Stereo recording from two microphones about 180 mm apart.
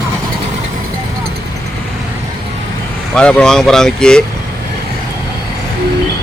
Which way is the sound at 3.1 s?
5° left (ahead or behind).